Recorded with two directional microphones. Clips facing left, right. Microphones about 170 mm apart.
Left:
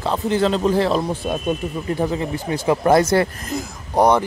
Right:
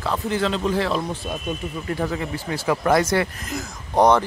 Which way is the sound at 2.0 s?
20° left (ahead or behind).